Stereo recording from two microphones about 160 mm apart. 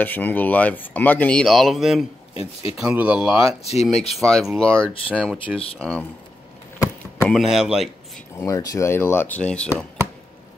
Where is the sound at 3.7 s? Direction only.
40° left (ahead or behind).